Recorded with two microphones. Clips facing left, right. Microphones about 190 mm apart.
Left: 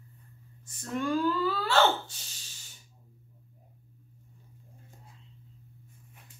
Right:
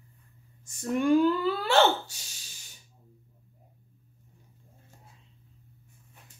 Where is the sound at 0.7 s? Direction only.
15° right (ahead or behind).